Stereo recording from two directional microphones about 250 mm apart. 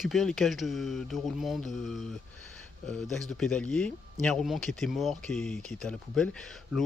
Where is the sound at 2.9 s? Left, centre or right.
Centre.